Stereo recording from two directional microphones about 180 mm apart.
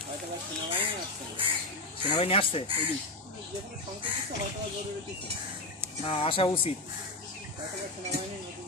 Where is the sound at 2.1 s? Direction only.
30° left (ahead or behind).